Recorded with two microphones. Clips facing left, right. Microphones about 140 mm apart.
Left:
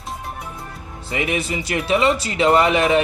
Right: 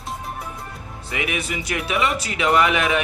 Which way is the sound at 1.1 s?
30° left (ahead or behind).